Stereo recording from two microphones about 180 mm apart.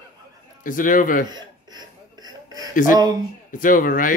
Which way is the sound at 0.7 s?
50° left (ahead or behind).